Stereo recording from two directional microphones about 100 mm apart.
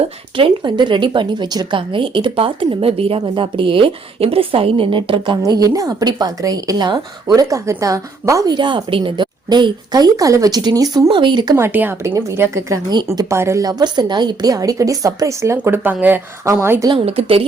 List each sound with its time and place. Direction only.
0.3 s speech: 55° right (ahead or behind)
1.9 s a woman's voice: 55° right (ahead or behind)
3.2 s a woman's voice: 55° right (ahead or behind)
5.5 s speech: 40° right (ahead or behind)
8.4 s speech: 50° right (ahead or behind)
11.1 s speech: 50° right (ahead or behind)
11.5 s speech: 20° right (ahead or behind)
12.1 s speech: 30° right (ahead or behind)
13.7 s speech: 45° right (ahead or behind); by 16.2 s 15° right (ahead or behind)
16.4 s speech: 30° right (ahead or behind)
17.1 s a woman's voice: 80° right